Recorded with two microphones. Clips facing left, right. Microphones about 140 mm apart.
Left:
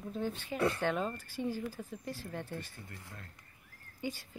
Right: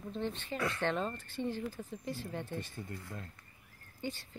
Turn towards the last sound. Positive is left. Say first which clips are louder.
# left 1 dB
turn(degrees=10)  # may be behind; listen again after turning